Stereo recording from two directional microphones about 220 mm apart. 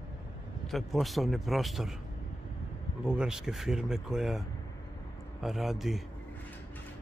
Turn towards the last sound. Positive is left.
turn(degrees=0)  # may be behind; listen again after turning